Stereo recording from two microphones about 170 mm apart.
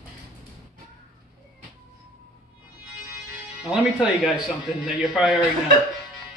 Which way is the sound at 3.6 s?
5° right (ahead or behind).